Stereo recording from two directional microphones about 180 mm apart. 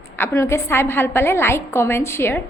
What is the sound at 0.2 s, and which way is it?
A woman's voice, 15° left (ahead or behind).